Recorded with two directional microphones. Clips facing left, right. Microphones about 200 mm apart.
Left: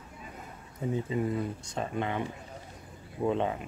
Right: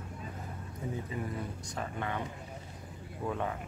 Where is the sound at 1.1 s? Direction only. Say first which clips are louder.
Left 7 dB; 25° left (ahead or behind).